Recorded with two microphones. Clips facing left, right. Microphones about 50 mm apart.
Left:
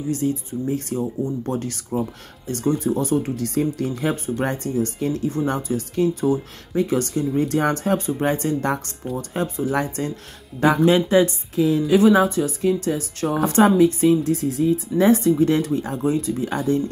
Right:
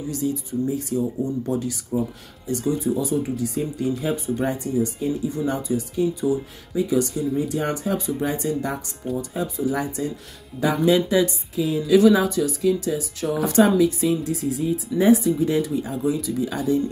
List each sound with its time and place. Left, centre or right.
0.1 s speech: left
3.3 s speech: left
4.8 s speech: left
5.3 s a woman's voice: left
11.5 s speech: left
11.9 s speech: left